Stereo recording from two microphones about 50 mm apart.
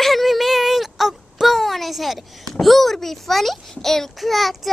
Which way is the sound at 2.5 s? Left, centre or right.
Centre.